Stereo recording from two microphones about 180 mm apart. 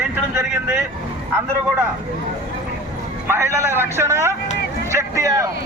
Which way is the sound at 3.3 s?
15° right (ahead or behind).